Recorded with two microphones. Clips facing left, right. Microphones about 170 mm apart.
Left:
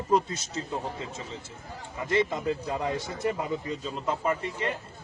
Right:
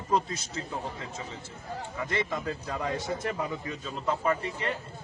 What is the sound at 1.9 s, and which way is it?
A man's voice, 20° left (ahead or behind).